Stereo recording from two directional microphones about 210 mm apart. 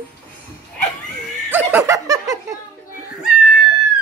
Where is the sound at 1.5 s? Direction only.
10° right (ahead or behind).